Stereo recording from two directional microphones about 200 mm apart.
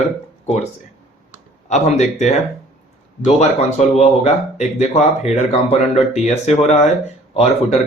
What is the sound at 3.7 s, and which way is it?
Speech, 35° left (ahead or behind).